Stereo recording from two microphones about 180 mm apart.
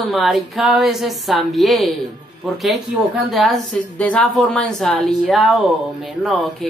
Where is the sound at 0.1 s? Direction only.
Centre (ahead or behind).